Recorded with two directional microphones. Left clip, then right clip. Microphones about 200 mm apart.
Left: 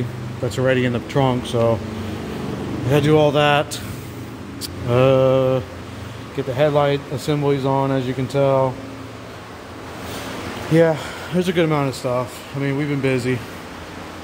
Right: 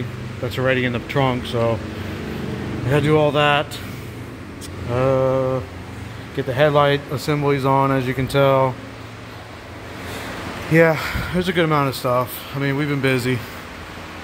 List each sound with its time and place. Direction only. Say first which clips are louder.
0.5 s speech: left 1 dB; 20° left (ahead or behind)
2.9 s speech: left 1 dB; 20° left (ahead or behind)
5.1 s mantra: left 3 dB; 25° left (ahead or behind)
6.3 s speech: right 1 dB; 5° left (ahead or behind)
10.7 s speech: right 1 dB; 5° left (ahead or behind)